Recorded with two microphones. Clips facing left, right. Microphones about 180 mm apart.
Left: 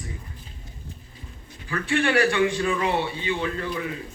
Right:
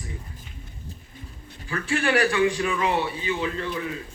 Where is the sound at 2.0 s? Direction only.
30° left (ahead or behind).